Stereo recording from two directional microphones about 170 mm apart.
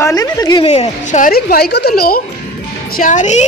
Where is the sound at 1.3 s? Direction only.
65° left (ahead or behind).